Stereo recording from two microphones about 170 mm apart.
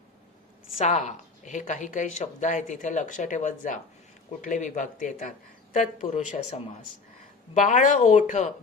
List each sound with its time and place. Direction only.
0.8 s speech: 45° left (ahead or behind)
7.5 s speech: 50° left (ahead or behind)